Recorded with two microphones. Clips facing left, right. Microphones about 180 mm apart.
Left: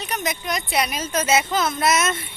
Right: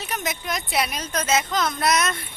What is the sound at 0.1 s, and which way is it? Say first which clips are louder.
Speech: left 2 dB; centre (ahead or behind).